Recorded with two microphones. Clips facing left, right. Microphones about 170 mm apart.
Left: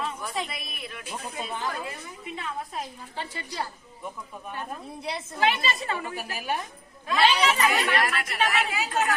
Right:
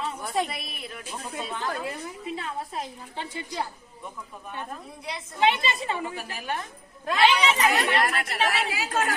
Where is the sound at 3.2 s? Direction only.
15° right (ahead or behind).